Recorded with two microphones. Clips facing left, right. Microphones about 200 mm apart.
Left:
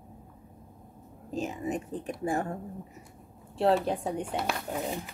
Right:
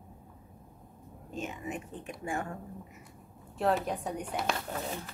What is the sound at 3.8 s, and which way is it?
Speech, 30° left (ahead or behind).